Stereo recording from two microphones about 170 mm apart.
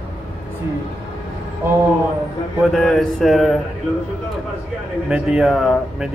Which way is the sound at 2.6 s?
Centre (ahead or behind).